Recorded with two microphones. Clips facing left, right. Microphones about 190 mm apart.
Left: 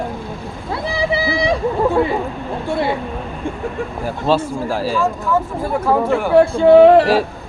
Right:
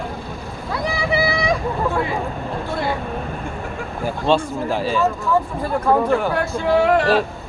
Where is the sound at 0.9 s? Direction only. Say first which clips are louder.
Left 3 dB; 35° left (ahead or behind).